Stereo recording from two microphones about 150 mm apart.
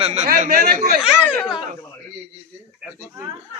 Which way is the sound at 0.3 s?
75° right (ahead or behind).